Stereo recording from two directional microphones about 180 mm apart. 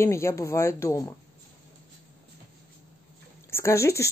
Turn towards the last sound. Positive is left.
turn(degrees=15)  # may be behind; listen again after turning